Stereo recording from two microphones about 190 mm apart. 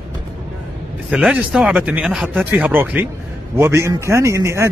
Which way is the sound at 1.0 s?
5° right (ahead or behind).